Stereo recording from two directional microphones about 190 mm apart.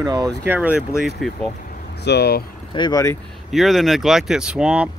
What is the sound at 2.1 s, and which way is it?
Speech, 60° left (ahead or behind).